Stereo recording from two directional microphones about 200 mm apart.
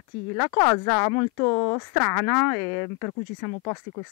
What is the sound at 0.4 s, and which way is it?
Speech, 15° left (ahead or behind).